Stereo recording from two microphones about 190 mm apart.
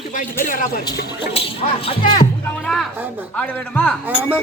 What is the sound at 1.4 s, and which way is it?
Speech, 30° left (ahead or behind).